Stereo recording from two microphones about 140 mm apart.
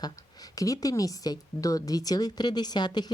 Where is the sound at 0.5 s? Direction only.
25° left (ahead or behind).